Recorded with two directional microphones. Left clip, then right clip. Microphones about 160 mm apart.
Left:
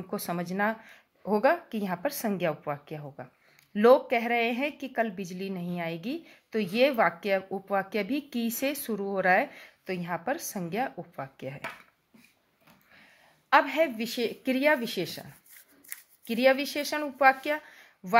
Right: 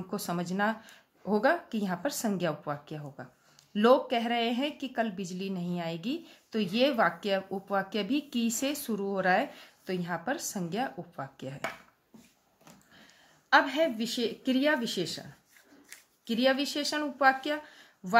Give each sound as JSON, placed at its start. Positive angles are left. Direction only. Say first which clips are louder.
{"t": 0.1, "sound": "a woman's voice", "louder": "left 2 dB", "side_deg": 15}
{"t": 13.5, "sound": "a woman's voice", "louder": "left 1 dB", "side_deg": 25}
{"t": 16.3, "sound": "a woman's voice", "louder": "left 3 dB", "side_deg": 25}